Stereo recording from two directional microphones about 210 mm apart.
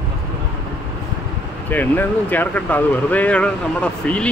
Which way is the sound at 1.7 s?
10° left (ahead or behind).